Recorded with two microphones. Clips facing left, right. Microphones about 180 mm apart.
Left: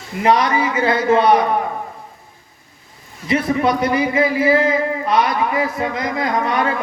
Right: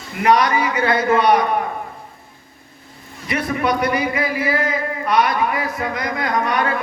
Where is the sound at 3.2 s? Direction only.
25° left (ahead or behind).